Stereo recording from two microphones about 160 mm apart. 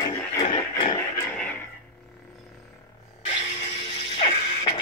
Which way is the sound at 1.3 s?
10° left (ahead or behind).